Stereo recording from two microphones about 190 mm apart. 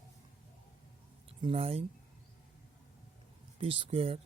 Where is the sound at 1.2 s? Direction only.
30° right (ahead or behind).